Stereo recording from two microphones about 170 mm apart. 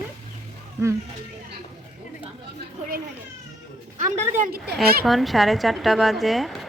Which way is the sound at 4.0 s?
45° right (ahead or behind).